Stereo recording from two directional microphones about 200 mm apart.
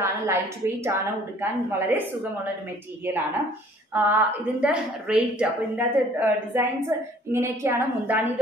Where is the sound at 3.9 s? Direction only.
10° right (ahead or behind).